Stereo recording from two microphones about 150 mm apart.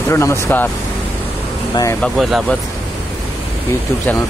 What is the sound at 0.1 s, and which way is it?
Speech, 20° left (ahead or behind).